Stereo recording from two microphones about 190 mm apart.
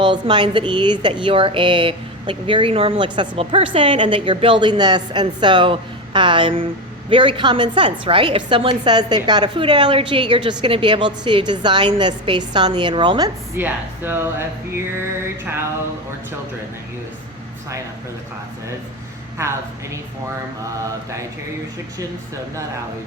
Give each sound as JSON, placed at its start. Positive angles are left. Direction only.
{"t": 0.0, "sound": "speech", "side_deg": -25}
{"t": 13.6, "sound": "speech", "side_deg": -10}
{"t": 19.4, "sound": "a woman's voice", "side_deg": -15}